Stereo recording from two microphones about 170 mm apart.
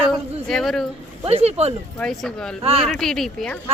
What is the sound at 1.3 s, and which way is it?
Speech, 35° right (ahead or behind).